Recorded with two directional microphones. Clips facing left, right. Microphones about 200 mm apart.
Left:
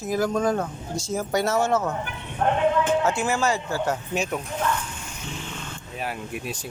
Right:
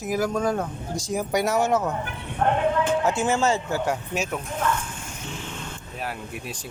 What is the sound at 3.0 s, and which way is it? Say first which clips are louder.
Speech: right 1 dB; 20° right (ahead or behind).